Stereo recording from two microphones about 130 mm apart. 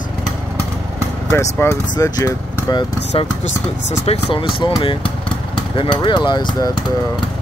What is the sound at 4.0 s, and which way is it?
Speech, 45° left (ahead or behind).